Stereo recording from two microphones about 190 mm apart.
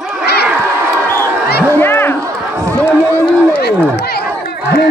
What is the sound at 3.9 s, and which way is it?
Chatter, 55° left (ahead or behind).